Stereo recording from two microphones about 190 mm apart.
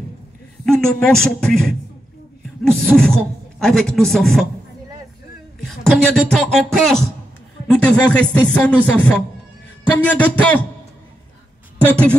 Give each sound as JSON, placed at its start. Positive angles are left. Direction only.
{"t": 0.7, "sound": "a man's voice", "side_deg": 5}
{"t": 5.7, "sound": "a man's voice", "side_deg": 5}